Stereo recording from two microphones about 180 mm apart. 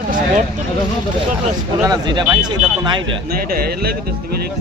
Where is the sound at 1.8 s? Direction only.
25° right (ahead or behind).